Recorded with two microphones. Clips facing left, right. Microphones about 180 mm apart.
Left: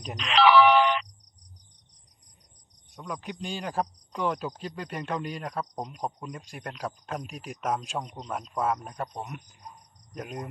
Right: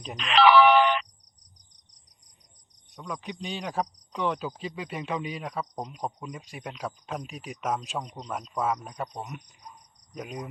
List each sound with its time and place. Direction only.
0.2 s speech: 55° right (ahead or behind)
2.9 s a man's voice: centre (ahead or behind)